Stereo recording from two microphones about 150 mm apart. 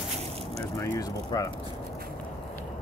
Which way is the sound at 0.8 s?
20° left (ahead or behind).